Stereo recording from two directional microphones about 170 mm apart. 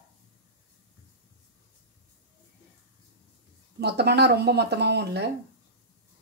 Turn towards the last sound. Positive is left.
turn(degrees=-80)